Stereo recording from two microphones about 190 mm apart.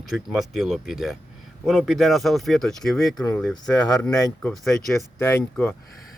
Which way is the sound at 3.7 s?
20° left (ahead or behind).